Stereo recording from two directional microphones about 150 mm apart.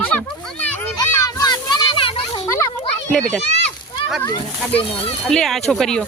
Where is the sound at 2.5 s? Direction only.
20° left (ahead or behind).